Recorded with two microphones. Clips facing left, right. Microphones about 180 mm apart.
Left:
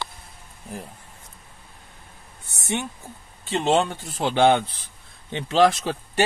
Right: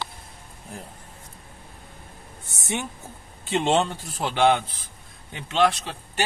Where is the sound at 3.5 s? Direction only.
Centre (ahead or behind).